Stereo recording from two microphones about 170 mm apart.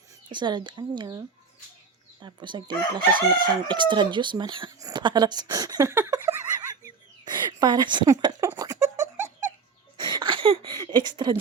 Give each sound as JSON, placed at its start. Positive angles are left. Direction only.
{"t": 0.3, "sound": "speech", "side_deg": -25}
{"t": 2.2, "sound": "speech", "side_deg": -25}
{"t": 3.0, "sound": "crowing", "side_deg": -55}
{"t": 3.7, "sound": "speech", "side_deg": -25}
{"t": 7.3, "sound": "a sound", "side_deg": -25}
{"t": 10.1, "sound": "a sound", "side_deg": -25}